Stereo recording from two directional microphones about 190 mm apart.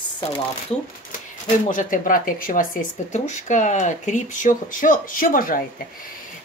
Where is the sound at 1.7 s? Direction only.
45° left (ahead or behind).